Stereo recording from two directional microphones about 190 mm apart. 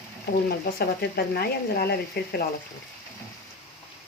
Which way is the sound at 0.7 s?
55° left (ahead or behind).